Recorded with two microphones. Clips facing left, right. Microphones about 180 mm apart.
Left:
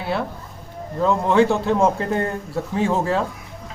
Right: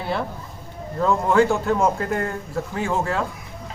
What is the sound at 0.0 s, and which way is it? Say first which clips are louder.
Speech: left 1 dB; centre (ahead or behind).